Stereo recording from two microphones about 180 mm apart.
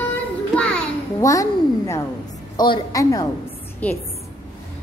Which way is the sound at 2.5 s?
20° left (ahead or behind).